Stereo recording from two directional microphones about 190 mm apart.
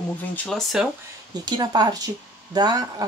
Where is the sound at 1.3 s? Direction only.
20° right (ahead or behind).